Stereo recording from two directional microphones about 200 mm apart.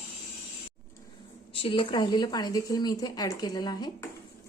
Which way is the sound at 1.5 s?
25° left (ahead or behind).